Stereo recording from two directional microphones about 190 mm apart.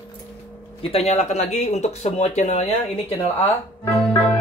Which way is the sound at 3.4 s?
15° left (ahead or behind).